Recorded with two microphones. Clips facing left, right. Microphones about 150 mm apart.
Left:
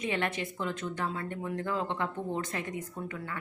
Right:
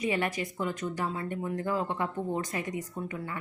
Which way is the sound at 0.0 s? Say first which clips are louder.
Right 2 dB; 5° right (ahead or behind).